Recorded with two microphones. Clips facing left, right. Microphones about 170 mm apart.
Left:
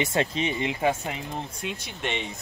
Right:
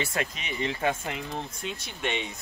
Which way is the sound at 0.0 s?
25° left (ahead or behind).